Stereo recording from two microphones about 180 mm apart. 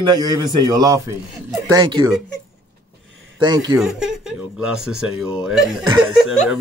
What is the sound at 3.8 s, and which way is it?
Speech, 5° right (ahead or behind).